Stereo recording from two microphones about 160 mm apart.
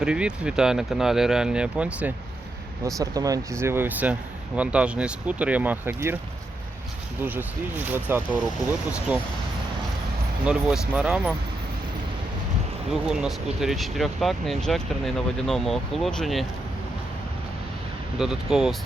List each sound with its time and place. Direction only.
0.0 s speech: 5° right (ahead or behind)
2.8 s speech: 20° right (ahead or behind)
7.2 s speech: 10° right (ahead or behind)
10.4 s speech: 5° right (ahead or behind)
12.9 s speech: 5° right (ahead or behind)
18.2 s speech: 5° right (ahead or behind)